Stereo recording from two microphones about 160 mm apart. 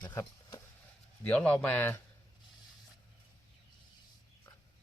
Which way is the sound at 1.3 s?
10° left (ahead or behind).